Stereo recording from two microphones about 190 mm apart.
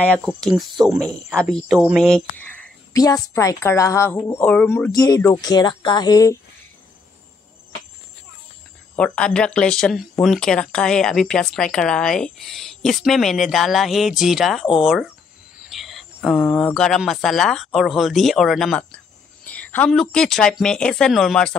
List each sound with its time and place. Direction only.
0.2 s speech: centre (ahead or behind)
2.9 s a woman's voice: 20° left (ahead or behind)
8.9 s speech: 5° left (ahead or behind)